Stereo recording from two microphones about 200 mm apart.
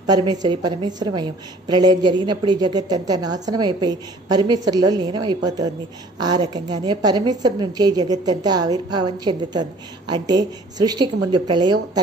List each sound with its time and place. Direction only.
0.1 s a woman's voice: 20° right (ahead or behind)